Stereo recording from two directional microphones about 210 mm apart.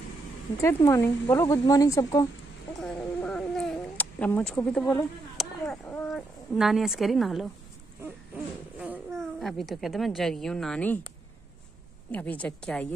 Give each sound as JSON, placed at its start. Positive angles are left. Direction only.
{"t": 0.6, "sound": "speech", "side_deg": 15}
{"t": 2.8, "sound": "cat", "side_deg": 5}
{"t": 8.7, "sound": "a woman's voice", "side_deg": -5}
{"t": 12.1, "sound": "a woman's voice", "side_deg": 5}